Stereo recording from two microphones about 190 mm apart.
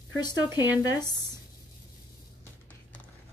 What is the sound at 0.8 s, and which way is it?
Speech, 20° left (ahead or behind).